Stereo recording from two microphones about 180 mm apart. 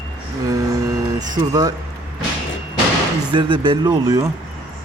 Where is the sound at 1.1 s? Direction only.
20° right (ahead or behind).